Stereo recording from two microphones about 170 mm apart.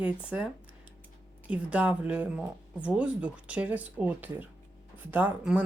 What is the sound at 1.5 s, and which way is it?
Speech, 5° right (ahead or behind).